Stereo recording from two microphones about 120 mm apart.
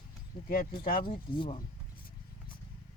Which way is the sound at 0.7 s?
45° left (ahead or behind).